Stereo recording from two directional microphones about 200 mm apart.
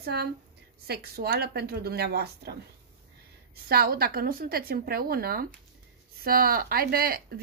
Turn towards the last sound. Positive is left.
turn(degrees=-50)  # may be behind; listen again after turning